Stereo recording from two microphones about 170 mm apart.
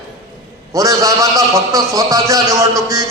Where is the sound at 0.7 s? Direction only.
20° right (ahead or behind).